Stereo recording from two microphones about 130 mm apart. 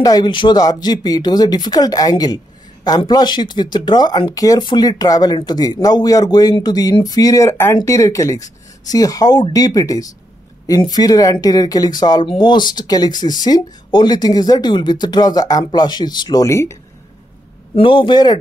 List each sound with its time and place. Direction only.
0.0 s speech: 35° left (ahead or behind)
16.4 s speech: 20° left (ahead or behind)
17.7 s speech: 40° left (ahead or behind)